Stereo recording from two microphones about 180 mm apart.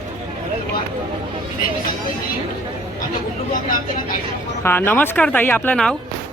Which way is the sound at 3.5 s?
50° left (ahead or behind).